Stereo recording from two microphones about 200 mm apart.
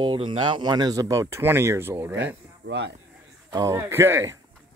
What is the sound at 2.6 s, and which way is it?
Speech, 60° right (ahead or behind).